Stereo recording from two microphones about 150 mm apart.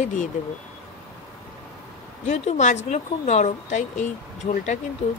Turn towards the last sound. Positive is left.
turn(degrees=55)  # may be behind; listen again after turning